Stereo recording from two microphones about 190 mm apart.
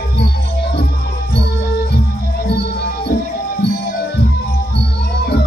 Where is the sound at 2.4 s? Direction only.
60° left (ahead or behind).